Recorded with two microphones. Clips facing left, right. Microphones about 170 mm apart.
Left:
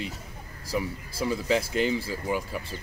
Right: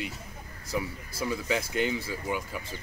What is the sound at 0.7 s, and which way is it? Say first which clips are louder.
Speech: left 2 dB; 30° left (ahead or behind).